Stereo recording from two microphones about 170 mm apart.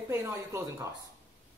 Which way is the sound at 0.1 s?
15° right (ahead or behind).